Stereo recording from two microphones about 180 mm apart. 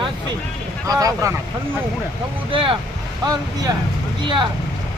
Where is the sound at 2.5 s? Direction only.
30° right (ahead or behind).